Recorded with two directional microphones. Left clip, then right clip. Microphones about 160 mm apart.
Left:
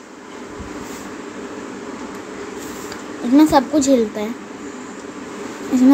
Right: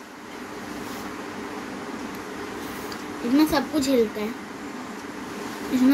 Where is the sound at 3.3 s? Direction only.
45° left (ahead or behind).